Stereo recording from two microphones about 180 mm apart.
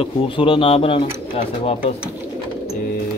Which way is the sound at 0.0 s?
30° left (ahead or behind).